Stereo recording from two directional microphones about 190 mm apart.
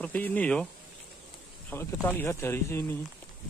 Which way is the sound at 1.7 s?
10° left (ahead or behind).